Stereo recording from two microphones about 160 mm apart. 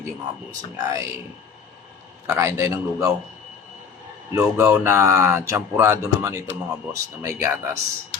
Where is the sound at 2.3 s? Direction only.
15° right (ahead or behind).